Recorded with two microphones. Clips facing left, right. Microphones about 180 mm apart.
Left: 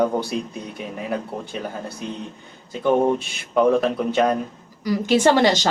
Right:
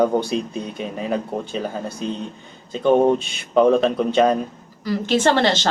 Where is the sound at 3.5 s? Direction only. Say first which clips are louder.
Right 2 dB; centre (ahead or behind).